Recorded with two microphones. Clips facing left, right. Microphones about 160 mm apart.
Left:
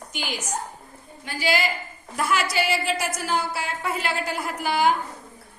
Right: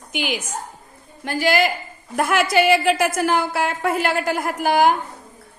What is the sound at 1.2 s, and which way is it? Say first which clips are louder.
A woman's voice: right 6 dB; 50° right (ahead or behind).